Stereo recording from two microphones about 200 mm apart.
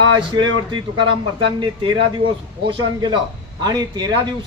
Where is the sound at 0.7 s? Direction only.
25° right (ahead or behind).